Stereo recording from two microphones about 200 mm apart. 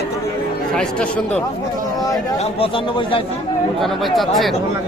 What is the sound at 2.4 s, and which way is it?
Speech, 30° left (ahead or behind).